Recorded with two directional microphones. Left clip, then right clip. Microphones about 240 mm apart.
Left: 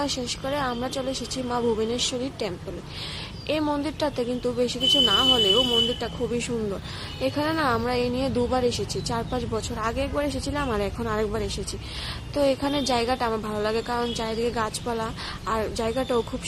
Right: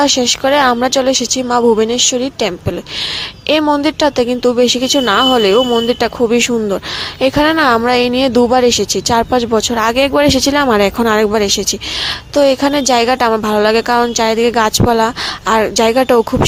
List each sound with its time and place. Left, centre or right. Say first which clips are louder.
0.0 s a woman's voice: right 17 dB; right
3.5 s a woman's voice: right 14 dB; right